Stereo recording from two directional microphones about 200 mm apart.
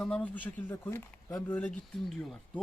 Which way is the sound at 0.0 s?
5° left (ahead or behind).